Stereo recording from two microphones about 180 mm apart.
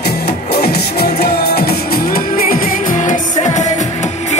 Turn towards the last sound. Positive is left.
turn(degrees=40)  # may be behind; listen again after turning